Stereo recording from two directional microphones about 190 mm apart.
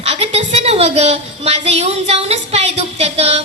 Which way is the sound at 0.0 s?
35° right (ahead or behind).